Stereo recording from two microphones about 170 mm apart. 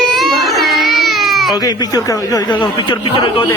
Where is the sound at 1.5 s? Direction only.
20° left (ahead or behind).